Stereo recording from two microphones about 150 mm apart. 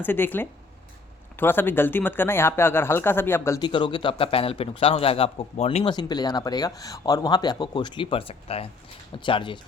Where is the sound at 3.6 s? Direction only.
30° left (ahead or behind).